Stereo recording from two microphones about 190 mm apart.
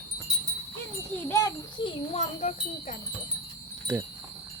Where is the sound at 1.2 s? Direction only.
15° left (ahead or behind).